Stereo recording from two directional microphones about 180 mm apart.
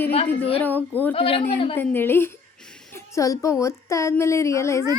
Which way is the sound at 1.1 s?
30° left (ahead or behind).